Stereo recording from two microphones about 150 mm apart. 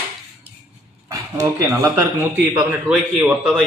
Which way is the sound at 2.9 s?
10° right (ahead or behind).